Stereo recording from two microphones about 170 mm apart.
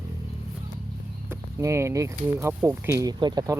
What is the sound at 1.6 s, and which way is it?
Speech, 15° right (ahead or behind).